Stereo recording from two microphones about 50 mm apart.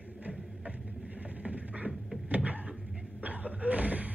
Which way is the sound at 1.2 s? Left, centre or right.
Right.